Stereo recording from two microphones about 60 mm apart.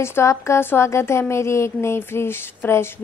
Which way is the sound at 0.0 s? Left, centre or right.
Left.